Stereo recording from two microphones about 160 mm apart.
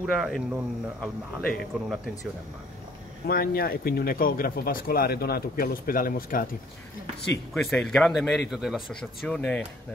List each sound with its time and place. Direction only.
0.0 s speech: centre (ahead or behind)
3.3 s speech: 70° left (ahead or behind)
7.5 s speech: centre (ahead or behind)